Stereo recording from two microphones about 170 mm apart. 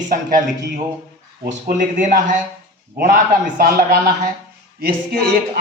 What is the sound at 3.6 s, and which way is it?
Speech, 60° right (ahead or behind).